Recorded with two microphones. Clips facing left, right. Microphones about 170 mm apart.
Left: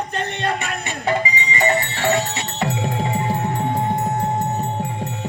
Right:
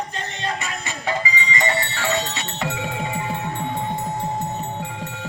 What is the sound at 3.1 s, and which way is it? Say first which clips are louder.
Music: left 5 dB; 40° left (ahead or behind).